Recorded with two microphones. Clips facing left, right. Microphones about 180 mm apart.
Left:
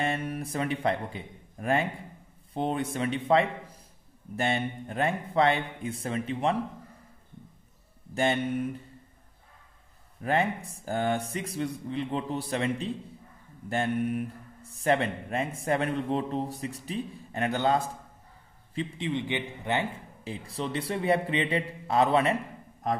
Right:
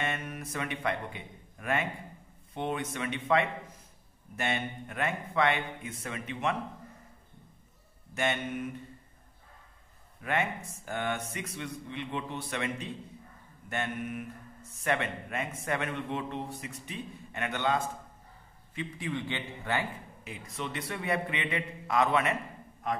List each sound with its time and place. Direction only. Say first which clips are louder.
0.0 s speech: left 5 dB; 30° left (ahead or behind)
8.1 s speech: left 5 dB; 30° left (ahead or behind)
10.2 s speech: left 5 dB; 35° left (ahead or behind)
18.8 s speech: left 4 dB; 25° left (ahead or behind)